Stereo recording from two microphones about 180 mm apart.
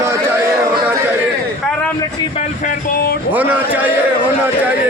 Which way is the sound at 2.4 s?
45° left (ahead or behind).